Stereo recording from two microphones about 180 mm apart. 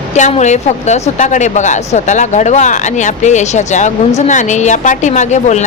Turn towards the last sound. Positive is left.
turn(degrees=40)  # may be behind; listen again after turning